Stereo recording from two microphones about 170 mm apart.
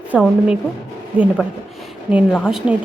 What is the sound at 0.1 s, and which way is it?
A woman's voice, 5° right (ahead or behind).